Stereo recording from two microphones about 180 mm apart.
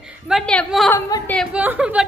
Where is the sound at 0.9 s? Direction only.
20° left (ahead or behind).